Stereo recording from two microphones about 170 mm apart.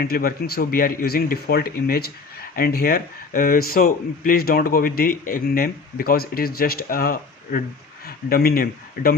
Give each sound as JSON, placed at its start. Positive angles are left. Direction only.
{"t": 0.0, "sound": "speech", "side_deg": 60}